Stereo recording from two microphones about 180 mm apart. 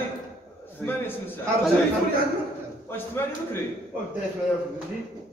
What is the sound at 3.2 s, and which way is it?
Speech, 15° left (ahead or behind).